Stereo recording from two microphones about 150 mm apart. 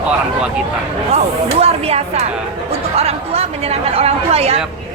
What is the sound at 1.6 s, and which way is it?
A woman's voice, 45° right (ahead or behind).